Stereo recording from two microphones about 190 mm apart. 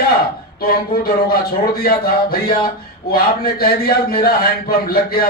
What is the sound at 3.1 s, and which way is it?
A man's voice, 50° left (ahead or behind).